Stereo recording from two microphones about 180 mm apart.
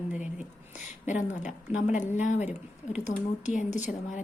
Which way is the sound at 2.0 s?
40° left (ahead or behind).